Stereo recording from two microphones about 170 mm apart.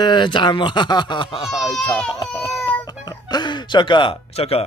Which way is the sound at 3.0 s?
25° left (ahead or behind).